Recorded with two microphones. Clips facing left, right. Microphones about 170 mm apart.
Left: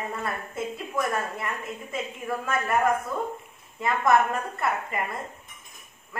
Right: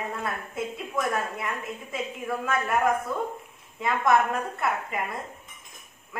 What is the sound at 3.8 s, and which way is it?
A woman's voice, centre (ahead or behind).